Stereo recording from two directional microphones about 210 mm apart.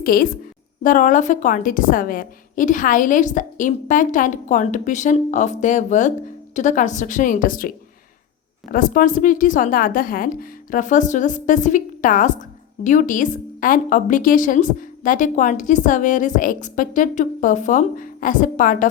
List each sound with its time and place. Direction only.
0.0 s a woman's voice: 45° left (ahead or behind)
8.7 s a woman's voice: 40° left (ahead or behind)